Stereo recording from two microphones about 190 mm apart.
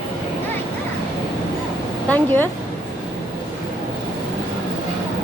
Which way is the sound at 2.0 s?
10° left (ahead or behind).